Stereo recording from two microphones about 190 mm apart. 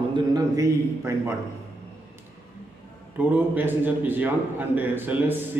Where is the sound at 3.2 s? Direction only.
10° right (ahead or behind).